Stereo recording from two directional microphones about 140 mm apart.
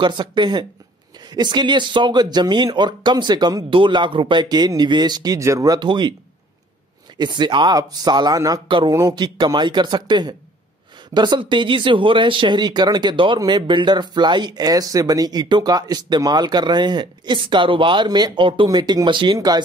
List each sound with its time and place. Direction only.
0.0 s speech: 30° right (ahead or behind)
7.2 s speech: 30° right (ahead or behind)